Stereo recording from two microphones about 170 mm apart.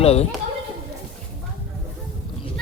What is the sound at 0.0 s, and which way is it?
Speech, 35° left (ahead or behind).